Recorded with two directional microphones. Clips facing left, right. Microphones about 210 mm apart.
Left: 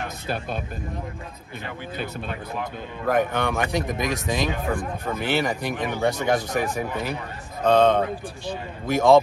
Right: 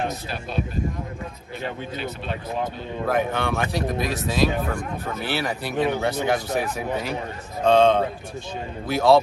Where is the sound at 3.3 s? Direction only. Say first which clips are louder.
Left 1 dB; 15° left (ahead or behind).